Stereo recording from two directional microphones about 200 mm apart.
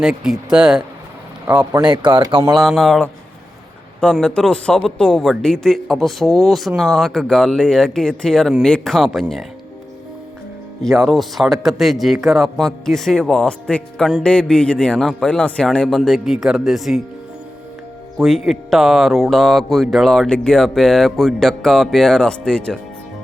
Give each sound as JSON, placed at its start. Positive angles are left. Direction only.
{"t": 0.0, "sound": "speech", "side_deg": -5}
{"t": 1.9, "sound": "speech", "side_deg": -25}
{"t": 2.6, "sound": "speech", "side_deg": 0}
{"t": 10.8, "sound": "speech", "side_deg": 0}
{"t": 18.2, "sound": "speech", "side_deg": 0}